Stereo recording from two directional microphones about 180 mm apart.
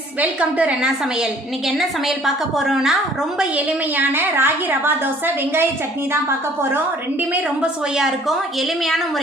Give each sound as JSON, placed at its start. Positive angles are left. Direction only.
{"t": 0.2, "sound": "a woman's voice", "side_deg": -5}
{"t": 7.2, "sound": "a woman's voice", "side_deg": -5}